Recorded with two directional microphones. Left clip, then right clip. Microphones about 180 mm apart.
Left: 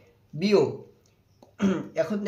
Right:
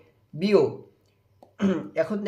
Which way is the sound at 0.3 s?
15° right (ahead or behind).